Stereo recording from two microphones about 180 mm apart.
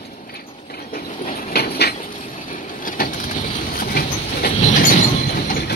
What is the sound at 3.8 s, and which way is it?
Train, 55° left (ahead or behind).